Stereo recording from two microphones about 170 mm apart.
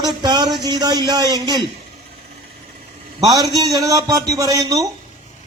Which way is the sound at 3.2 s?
20° right (ahead or behind).